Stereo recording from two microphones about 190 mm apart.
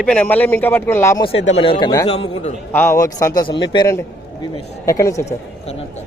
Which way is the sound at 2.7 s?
15° left (ahead or behind).